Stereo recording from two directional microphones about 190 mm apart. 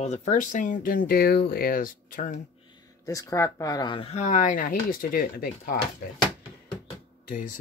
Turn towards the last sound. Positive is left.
turn(degrees=45)  # may be behind; listen again after turning